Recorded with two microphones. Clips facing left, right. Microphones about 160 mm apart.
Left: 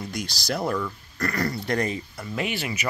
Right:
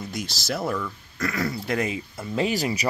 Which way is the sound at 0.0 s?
Centre (ahead or behind).